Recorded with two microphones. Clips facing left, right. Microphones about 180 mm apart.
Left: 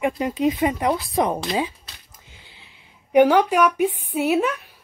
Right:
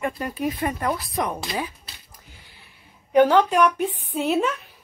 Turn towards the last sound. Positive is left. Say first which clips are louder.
# left 2 dB
turn(degrees=5)  # may be behind; listen again after turning